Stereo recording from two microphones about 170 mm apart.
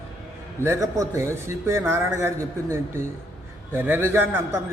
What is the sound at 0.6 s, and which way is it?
A man's voice, 15° right (ahead or behind).